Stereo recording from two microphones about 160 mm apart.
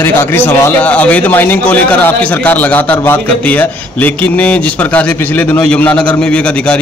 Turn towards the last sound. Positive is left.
turn(degrees=5)  # may be behind; listen again after turning